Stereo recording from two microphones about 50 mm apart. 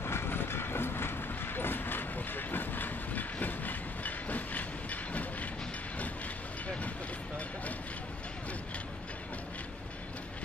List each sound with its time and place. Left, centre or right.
0.0 s train: left